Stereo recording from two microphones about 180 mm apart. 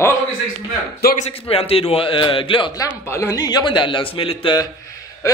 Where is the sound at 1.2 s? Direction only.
35° left (ahead or behind).